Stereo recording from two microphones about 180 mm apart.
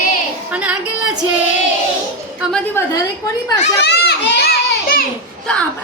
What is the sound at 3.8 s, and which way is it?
Children playing, 65° left (ahead or behind).